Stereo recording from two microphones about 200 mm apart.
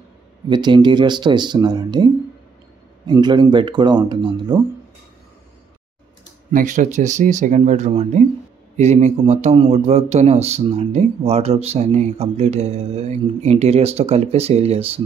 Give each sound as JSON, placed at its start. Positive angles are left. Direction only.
{"t": 0.5, "sound": "speech", "side_deg": -20}
{"t": 3.1, "sound": "speech", "side_deg": -20}
{"t": 6.5, "sound": "a man's voice", "side_deg": -40}